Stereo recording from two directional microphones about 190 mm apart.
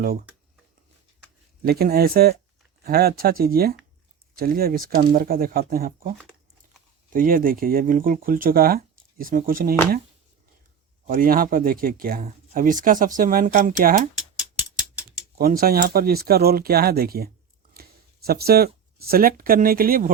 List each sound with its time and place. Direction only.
1.6 s speech: 55° right (ahead or behind)
11.0 s speech: 45° right (ahead or behind)
15.4 s speech: 50° right (ahead or behind)